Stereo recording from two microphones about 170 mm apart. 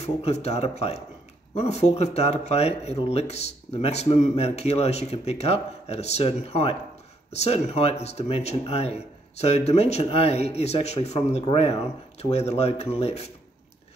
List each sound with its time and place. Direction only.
0.0 s speech: 40° left (ahead or behind)